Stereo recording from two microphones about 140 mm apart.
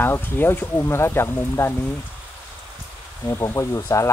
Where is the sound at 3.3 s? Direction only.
20° left (ahead or behind).